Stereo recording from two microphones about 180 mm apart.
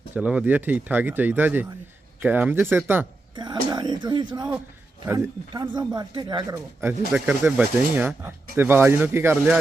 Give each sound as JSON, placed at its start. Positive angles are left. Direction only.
{"t": 0.1, "sound": "speech", "side_deg": -10}
{"t": 3.3, "sound": "speech", "side_deg": -25}
{"t": 6.8, "sound": "speech", "side_deg": -10}